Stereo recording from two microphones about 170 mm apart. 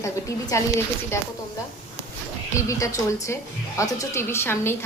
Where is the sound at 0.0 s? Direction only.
20° left (ahead or behind).